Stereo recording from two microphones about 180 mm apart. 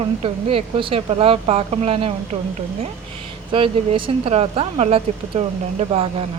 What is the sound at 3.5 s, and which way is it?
Speech, 30° right (ahead or behind).